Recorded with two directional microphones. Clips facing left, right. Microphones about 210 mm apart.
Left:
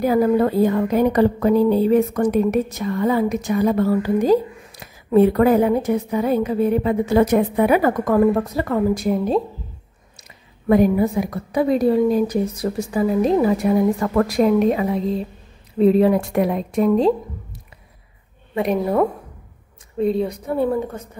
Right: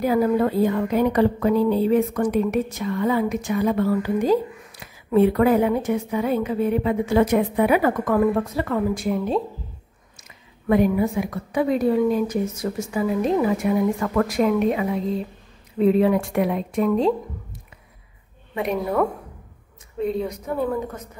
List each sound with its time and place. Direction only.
0.0 s speech: 40° left (ahead or behind)
10.1 s speech: 40° left (ahead or behind)
18.5 s speech: 35° left (ahead or behind)